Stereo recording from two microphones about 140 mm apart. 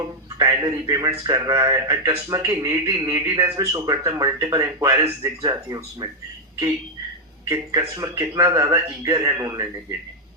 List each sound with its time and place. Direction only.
0.0 s a man's voice: 25° right (ahead or behind)
7.4 s a man's voice: 25° right (ahead or behind)